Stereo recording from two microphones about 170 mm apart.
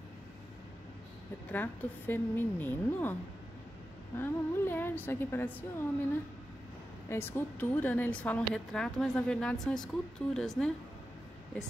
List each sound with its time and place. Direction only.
1.5 s a woman's voice: 10° left (ahead or behind)
4.2 s a woman's voice: 10° left (ahead or behind)
7.1 s a woman's voice: 15° left (ahead or behind)